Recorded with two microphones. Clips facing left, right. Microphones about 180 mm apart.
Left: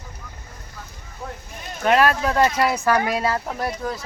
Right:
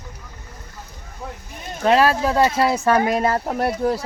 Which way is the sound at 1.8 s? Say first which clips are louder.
Right 2 dB; 30° right (ahead or behind).